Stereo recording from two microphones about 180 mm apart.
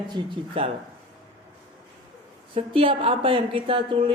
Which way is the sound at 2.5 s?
30° right (ahead or behind).